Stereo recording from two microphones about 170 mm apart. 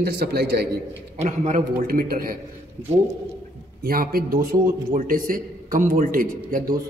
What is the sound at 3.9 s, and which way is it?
A man's voice, 60° right (ahead or behind).